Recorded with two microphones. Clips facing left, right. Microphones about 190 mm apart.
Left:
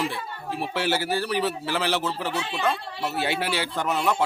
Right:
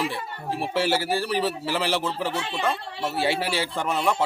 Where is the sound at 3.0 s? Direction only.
30° right (ahead or behind).